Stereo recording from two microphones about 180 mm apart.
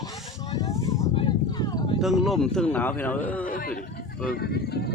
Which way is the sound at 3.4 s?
50° left (ahead or behind).